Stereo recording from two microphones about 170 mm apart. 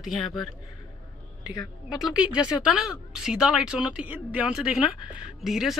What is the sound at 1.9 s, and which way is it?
A woman's voice, 5° right (ahead or behind).